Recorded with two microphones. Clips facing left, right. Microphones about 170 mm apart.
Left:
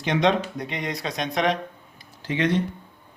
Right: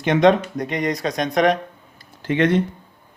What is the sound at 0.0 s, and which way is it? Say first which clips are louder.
Speech: right 6 dB; 50° right (ahead or behind).